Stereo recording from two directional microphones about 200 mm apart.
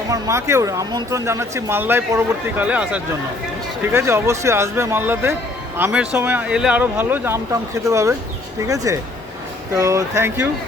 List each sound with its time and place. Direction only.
0.1 s speech: 15° right (ahead or behind)